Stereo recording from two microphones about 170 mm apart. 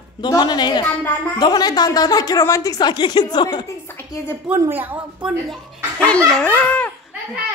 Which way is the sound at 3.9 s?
15° left (ahead or behind).